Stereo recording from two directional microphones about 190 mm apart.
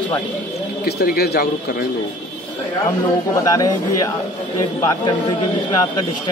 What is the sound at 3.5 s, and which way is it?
A man's voice, 20° left (ahead or behind).